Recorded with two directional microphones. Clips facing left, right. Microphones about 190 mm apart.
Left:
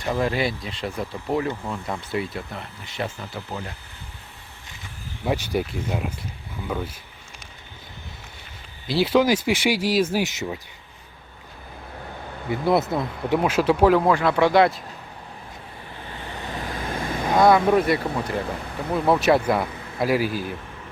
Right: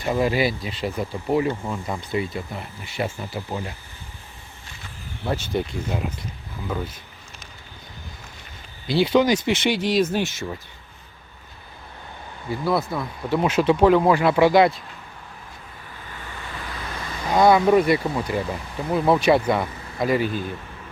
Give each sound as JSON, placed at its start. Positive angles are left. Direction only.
{"t": 0.0, "sound": "speech", "side_deg": -5}
{"t": 5.2, "sound": "speech", "side_deg": 10}
{"t": 8.9, "sound": "speech", "side_deg": 0}
{"t": 12.5, "sound": "speech", "side_deg": 20}
{"t": 13.4, "sound": "speech", "side_deg": 5}
{"t": 16.4, "sound": "vehicle", "side_deg": 45}
{"t": 17.3, "sound": "speech", "side_deg": 0}